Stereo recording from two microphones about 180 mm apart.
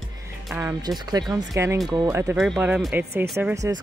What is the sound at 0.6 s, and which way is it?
Speech, 20° right (ahead or behind).